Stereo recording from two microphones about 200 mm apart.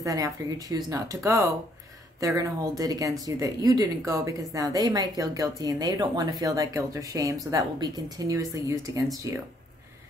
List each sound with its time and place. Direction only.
0.0 s speech: 15° right (ahead or behind)